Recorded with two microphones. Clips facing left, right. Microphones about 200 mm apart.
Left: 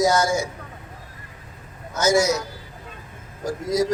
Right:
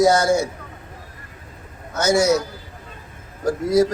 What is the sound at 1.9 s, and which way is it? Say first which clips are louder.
Speech: right 2 dB; 55° right (ahead or behind).